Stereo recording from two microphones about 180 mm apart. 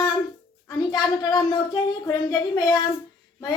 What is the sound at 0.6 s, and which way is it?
Speech, 20° left (ahead or behind).